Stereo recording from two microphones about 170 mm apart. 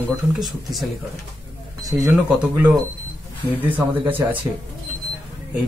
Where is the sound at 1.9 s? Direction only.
10° right (ahead or behind).